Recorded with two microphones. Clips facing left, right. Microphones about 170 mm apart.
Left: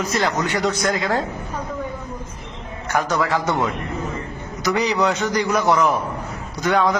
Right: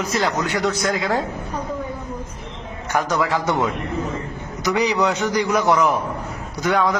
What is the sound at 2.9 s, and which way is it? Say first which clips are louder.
Speech: even; 15° right (ahead or behind).